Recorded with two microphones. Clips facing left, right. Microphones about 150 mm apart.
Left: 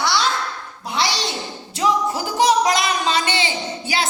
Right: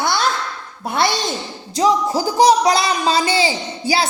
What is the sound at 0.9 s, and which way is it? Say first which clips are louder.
Speech: right 4 dB; 50° right (ahead or behind).